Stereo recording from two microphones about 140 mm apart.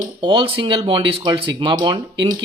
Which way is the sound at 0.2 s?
35° right (ahead or behind).